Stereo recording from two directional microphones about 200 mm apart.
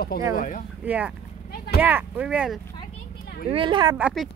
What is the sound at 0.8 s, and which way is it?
A woman's voice, 5° right (ahead or behind).